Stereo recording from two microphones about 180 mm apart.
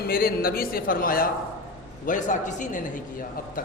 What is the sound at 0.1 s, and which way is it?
A man's voice, 55° left (ahead or behind).